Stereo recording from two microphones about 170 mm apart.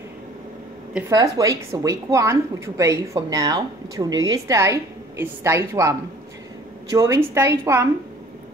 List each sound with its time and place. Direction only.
1.1 s a woman's voice: 20° right (ahead or behind)